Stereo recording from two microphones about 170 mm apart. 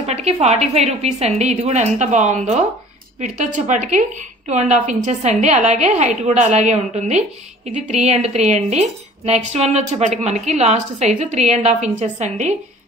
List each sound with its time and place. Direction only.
0.0 s a woman's voice: 40° right (ahead or behind)